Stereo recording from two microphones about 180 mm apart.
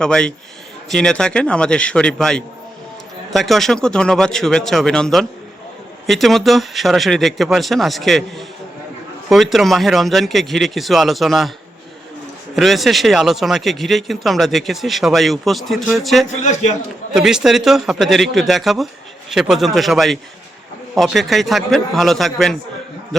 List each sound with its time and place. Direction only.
0.0 s speech: 5° left (ahead or behind)
12.5 s speech: centre (ahead or behind)
16.3 s a man's voice: 40° left (ahead or behind)
17.2 s speech: 5° right (ahead or behind)